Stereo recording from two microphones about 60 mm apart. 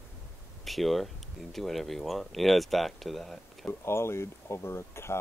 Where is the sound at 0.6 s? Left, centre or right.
Centre.